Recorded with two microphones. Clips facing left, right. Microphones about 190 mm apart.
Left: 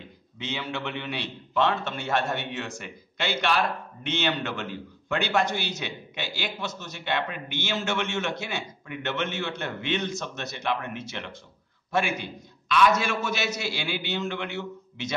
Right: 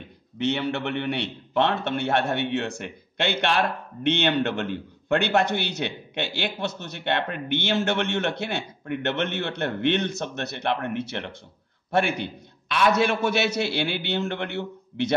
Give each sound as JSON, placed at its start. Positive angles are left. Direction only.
{"t": 0.4, "sound": "a man's voice", "side_deg": -65}